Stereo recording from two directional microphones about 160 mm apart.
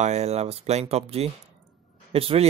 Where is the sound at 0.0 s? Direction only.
45° right (ahead or behind).